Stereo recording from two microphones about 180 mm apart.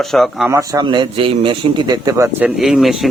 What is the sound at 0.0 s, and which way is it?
Speech, centre (ahead or behind).